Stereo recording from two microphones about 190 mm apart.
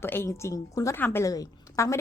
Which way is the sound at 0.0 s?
10° left (ahead or behind).